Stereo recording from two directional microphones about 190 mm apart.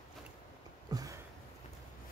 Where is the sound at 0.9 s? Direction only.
20° right (ahead or behind).